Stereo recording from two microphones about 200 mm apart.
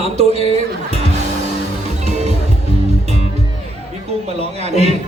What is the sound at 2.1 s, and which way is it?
Music, 35° right (ahead or behind).